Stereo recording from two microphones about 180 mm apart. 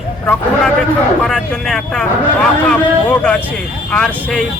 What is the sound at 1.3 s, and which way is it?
Speech, centre (ahead or behind).